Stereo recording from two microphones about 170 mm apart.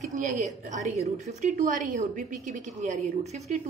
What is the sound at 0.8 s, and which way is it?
A woman's voice, 45° right (ahead or behind).